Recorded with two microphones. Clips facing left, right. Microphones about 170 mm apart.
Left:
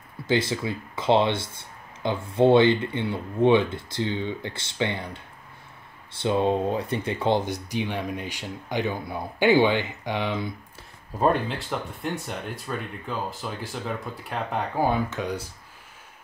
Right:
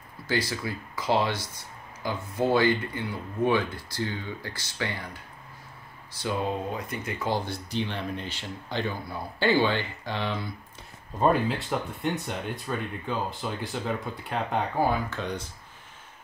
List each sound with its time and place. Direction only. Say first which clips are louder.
0.3 s speech: left 5 dB; 25° left (ahead or behind)
6.2 s speech: left 7 dB; 25° left (ahead or behind)
11.1 s speech: even; centre (ahead or behind)
15.0 s speech: left 3 dB; 10° left (ahead or behind)